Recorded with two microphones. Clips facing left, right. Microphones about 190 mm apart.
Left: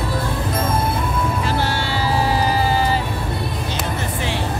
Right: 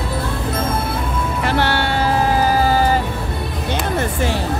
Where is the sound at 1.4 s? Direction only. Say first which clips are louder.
Right 3 dB; 65° right (ahead or behind); by 3.0 s 45° right (ahead or behind).